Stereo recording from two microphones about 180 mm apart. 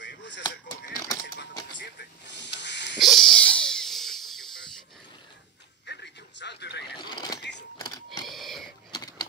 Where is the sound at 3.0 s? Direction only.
Centre (ahead or behind).